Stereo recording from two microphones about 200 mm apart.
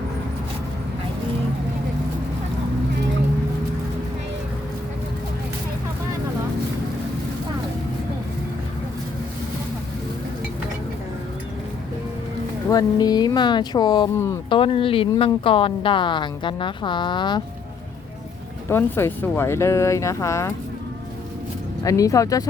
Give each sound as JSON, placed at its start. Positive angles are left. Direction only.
{"t": 12.6, "sound": "speech", "side_deg": 20}
{"t": 18.7, "sound": "speech", "side_deg": 10}
{"t": 21.8, "sound": "speech", "side_deg": 15}